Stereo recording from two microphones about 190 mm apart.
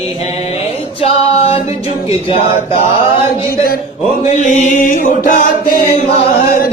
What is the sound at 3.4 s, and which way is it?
Chant, 50° left (ahead or behind).